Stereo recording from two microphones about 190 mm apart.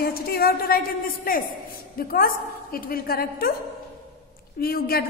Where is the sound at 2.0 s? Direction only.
50° left (ahead or behind).